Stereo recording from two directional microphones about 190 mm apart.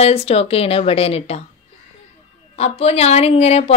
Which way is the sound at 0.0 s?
30° left (ahead or behind).